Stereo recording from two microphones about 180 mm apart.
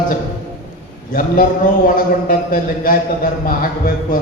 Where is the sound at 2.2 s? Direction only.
55° left (ahead or behind).